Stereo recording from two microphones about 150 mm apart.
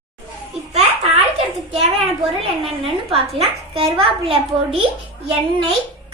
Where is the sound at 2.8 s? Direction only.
40° right (ahead or behind).